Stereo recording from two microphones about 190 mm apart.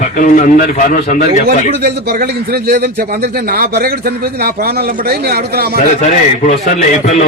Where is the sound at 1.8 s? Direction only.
55° right (ahead or behind).